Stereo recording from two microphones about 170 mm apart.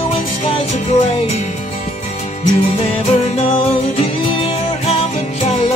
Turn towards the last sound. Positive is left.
turn(degrees=40)  # may be behind; listen again after turning